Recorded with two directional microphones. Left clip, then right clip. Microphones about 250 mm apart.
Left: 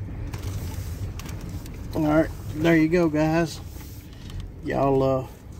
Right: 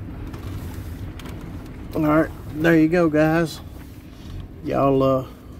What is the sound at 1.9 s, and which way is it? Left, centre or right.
Speech, centre.